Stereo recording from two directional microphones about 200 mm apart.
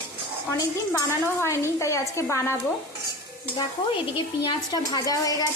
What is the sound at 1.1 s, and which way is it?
A woman's voice, 15° left (ahead or behind).